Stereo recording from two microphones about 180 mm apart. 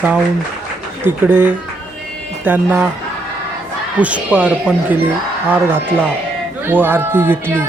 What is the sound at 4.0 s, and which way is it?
Speech, 10° right (ahead or behind).